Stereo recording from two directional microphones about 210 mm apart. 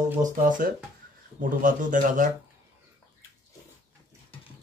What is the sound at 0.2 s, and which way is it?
Speech, 40° right (ahead or behind).